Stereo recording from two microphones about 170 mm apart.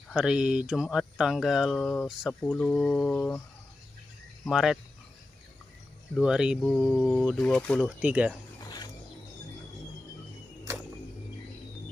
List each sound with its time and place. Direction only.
0.1 s speech: 5° right (ahead or behind)
4.5 s speech: 5° right (ahead or behind)
6.1 s speech: 5° right (ahead or behind)
8.0 s speech: 10° right (ahead or behind)
8.6 s mechanisms: 25° left (ahead or behind)